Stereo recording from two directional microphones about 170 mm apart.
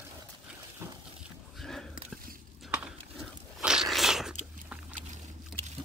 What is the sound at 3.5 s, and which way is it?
Biting, 5° right (ahead or behind).